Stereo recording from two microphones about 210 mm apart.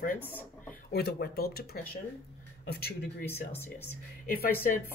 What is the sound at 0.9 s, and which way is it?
A man's voice, 50° left (ahead or behind).